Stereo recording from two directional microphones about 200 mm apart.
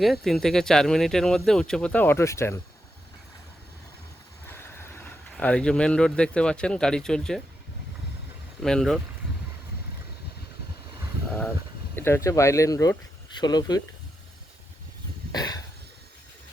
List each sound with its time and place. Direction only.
0.0 s speech: centre (ahead or behind)
4.4 s speech: 10° left (ahead or behind)
8.6 s speech: centre (ahead or behind)
11.3 s a sound: 5° left (ahead or behind)
11.9 s speech: 10° left (ahead or behind)
15.3 s a sound: 20° left (ahead or behind)